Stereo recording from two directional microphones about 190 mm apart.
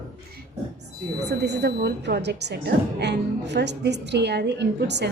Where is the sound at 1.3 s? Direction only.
60° right (ahead or behind).